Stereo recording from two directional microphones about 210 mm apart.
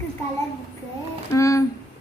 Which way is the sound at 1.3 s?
15° left (ahead or behind).